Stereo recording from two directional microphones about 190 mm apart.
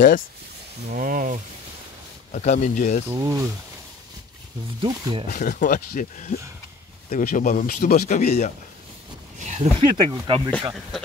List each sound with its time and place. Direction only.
0.8 s speech: 45° right (ahead or behind)
2.3 s speech: 40° left (ahead or behind)
3.2 s speech: 15° right (ahead or behind)
4.8 s speech: 20° right (ahead or behind)
5.3 s speech: 45° left (ahead or behind)
9.4 s speech: 35° right (ahead or behind)
9.8 s speech: 25° right (ahead or behind)